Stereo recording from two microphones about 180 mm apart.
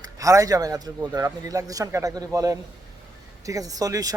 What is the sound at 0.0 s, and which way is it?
Speech, 20° right (ahead or behind).